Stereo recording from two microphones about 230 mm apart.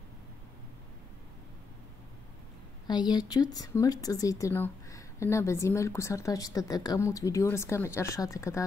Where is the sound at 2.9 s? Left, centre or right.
Centre.